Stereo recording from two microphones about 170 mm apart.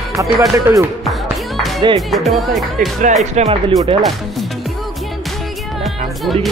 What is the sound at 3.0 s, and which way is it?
Speech, 45° right (ahead or behind).